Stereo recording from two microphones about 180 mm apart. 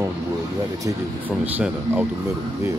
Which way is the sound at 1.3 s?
10° right (ahead or behind).